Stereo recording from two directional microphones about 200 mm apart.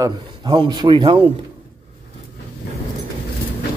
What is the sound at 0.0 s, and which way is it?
A man's voice, 20° right (ahead or behind).